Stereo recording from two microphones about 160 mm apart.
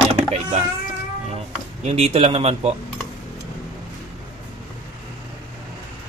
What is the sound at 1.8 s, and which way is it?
Speech, 40° right (ahead or behind).